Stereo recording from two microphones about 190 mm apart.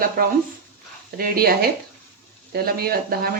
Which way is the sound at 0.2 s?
50° right (ahead or behind).